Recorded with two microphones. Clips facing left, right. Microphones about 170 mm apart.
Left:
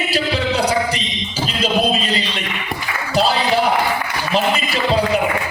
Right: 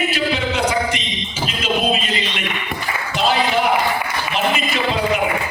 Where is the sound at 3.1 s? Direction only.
35° left (ahead or behind).